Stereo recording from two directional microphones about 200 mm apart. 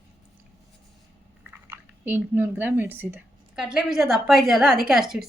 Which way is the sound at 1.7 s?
10° right (ahead or behind).